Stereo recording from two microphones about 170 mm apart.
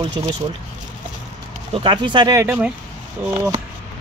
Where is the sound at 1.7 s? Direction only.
30° right (ahead or behind).